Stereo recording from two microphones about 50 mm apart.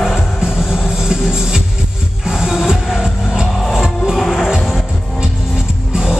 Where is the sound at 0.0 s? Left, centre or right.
Centre.